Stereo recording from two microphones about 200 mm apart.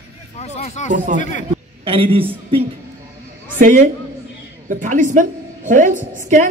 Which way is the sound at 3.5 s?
40° right (ahead or behind).